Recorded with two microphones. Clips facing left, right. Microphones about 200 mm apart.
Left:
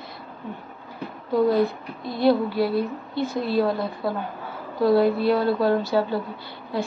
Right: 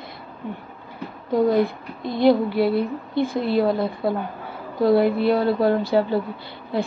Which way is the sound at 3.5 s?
25° right (ahead or behind).